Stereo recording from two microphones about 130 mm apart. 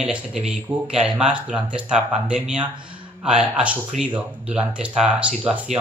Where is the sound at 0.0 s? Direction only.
5° right (ahead or behind).